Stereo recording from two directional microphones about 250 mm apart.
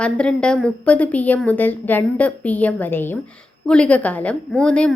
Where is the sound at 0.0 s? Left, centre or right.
Centre.